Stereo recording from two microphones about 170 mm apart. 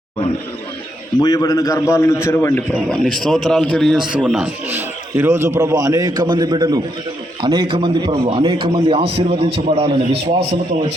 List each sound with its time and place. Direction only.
1.2 s a man's voice: 20° left (ahead or behind)
2.9 s a man's voice: centre (ahead or behind); by 10.6 s 35° right (ahead or behind)